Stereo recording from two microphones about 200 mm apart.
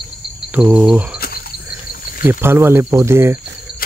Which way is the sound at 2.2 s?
10° right (ahead or behind).